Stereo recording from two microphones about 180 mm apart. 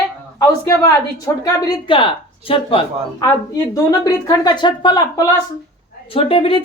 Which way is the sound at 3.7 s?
20° left (ahead or behind).